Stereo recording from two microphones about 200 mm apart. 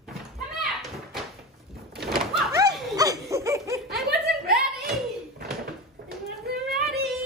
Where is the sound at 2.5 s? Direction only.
20° right (ahead or behind).